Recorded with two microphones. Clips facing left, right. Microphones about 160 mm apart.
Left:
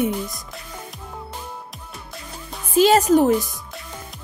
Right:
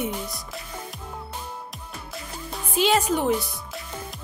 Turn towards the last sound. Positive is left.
turn(degrees=40)  # may be behind; listen again after turning